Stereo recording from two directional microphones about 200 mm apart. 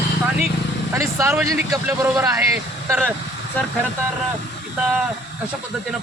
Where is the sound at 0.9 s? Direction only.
15° right (ahead or behind).